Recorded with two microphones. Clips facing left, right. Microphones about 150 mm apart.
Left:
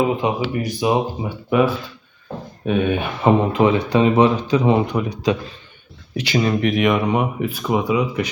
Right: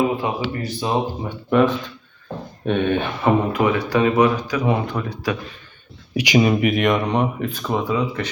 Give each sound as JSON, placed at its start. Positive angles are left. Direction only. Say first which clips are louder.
{"t": 0.2, "sound": "speech", "louder": "left 3 dB", "side_deg": 20}
{"t": 3.2, "sound": "speech", "louder": "left 3 dB", "side_deg": 25}
{"t": 6.1, "sound": "speech", "louder": "right 3 dB", "side_deg": -15}